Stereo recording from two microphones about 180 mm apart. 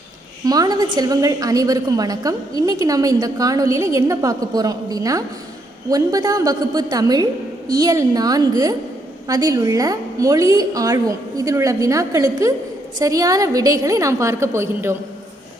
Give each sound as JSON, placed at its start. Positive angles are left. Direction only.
{"t": 0.4, "sound": "a woman's voice", "side_deg": -20}